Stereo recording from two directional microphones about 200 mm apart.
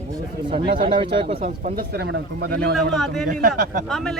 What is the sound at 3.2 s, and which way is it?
Speech, 45° right (ahead or behind).